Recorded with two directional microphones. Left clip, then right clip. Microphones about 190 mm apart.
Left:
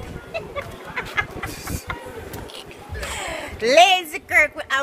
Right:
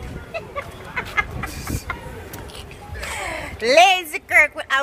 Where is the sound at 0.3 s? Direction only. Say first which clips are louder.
Even; 25° right (ahead or behind).